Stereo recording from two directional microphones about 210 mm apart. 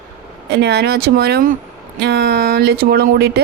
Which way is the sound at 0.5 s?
50° right (ahead or behind).